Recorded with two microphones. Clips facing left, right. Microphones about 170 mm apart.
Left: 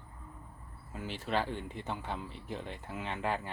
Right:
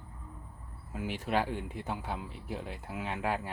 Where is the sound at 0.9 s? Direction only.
10° right (ahead or behind).